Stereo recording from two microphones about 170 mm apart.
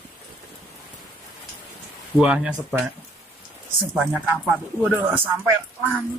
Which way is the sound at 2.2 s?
5° right (ahead or behind).